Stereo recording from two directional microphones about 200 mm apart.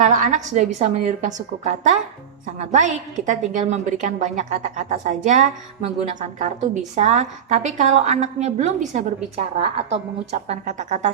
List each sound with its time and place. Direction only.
0.0 s a woman's voice: 40° right (ahead or behind)